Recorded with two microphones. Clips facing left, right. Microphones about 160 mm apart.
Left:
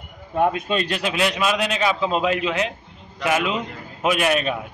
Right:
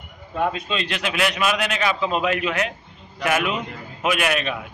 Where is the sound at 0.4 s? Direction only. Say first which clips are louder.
Left 4 dB; 50° left (ahead or behind).